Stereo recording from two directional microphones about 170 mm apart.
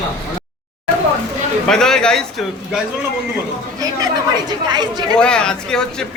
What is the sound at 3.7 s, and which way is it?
A woman's voice, 25° right (ahead or behind).